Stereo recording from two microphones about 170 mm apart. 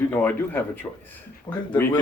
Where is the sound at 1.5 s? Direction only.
25° left (ahead or behind).